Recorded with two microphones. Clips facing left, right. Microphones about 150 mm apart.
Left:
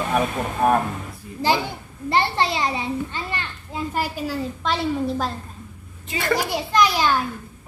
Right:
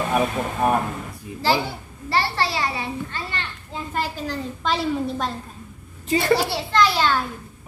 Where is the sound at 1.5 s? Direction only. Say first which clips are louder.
Even; 20° left (ahead or behind); by 5.3 s centre (ahead or behind).